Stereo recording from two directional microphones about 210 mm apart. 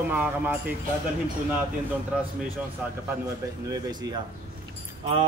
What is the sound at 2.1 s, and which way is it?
Speech, 5° right (ahead or behind).